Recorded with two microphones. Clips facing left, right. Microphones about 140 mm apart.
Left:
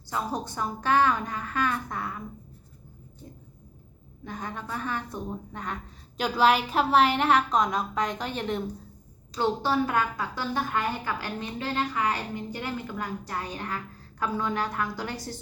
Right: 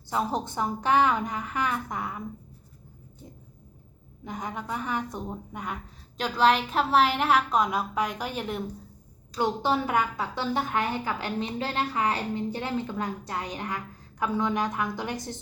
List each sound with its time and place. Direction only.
0.1 s a woman's voice: 25° right (ahead or behind)
4.2 s a woman's voice: 15° right (ahead or behind)
6.1 s a woman's voice: 5° left (ahead or behind); by 15.4 s 20° right (ahead or behind)